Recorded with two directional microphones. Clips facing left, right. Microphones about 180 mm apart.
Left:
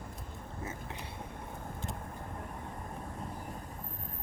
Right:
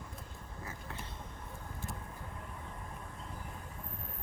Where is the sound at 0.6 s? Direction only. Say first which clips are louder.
Left 3 dB; 20° left (ahead or behind).